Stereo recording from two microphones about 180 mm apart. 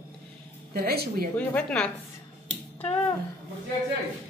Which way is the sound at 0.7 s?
60° right (ahead or behind).